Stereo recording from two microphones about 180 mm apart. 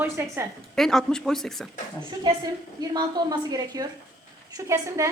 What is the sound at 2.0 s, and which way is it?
A woman's voice, 25° right (ahead or behind).